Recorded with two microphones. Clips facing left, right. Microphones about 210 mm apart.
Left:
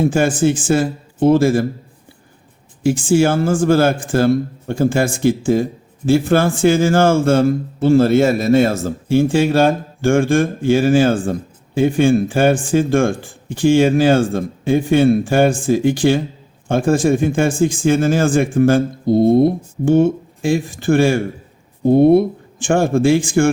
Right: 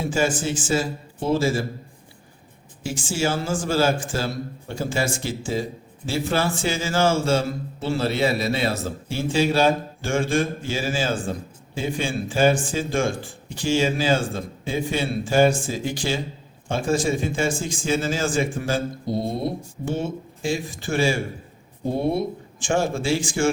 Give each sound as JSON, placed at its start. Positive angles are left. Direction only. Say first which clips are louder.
{"t": 0.0, "sound": "speech", "louder": "left 8 dB", "side_deg": 55}
{"t": 2.8, "sound": "a man's voice", "louder": "left 11 dB", "side_deg": 55}